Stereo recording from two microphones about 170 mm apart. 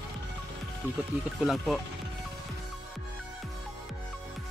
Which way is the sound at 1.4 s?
Centre (ahead or behind).